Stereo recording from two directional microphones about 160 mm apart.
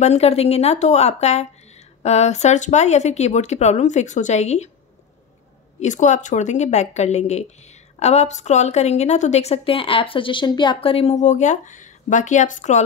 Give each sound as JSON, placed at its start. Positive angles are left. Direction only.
{"t": 0.0, "sound": "a woman's voice", "side_deg": 40}
{"t": 5.8, "sound": "a woman's voice", "side_deg": 50}